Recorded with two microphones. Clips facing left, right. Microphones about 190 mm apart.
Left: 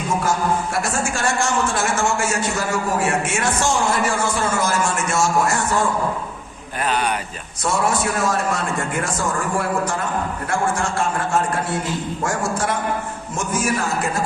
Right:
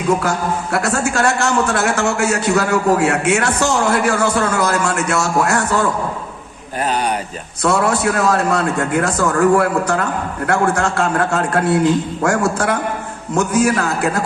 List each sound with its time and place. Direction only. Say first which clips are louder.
0.3 s a man's voice: right 1 dB; 65° right (ahead or behind)
6.8 s speech: right 2 dB; 40° right (ahead or behind)
7.6 s a man's voice: right 5 dB; 65° right (ahead or behind)